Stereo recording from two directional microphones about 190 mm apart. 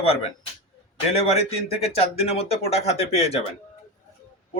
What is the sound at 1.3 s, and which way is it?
Speech, 35° left (ahead or behind).